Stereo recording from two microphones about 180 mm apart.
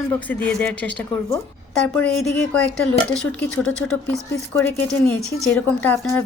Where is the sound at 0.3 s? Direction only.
5° left (ahead or behind).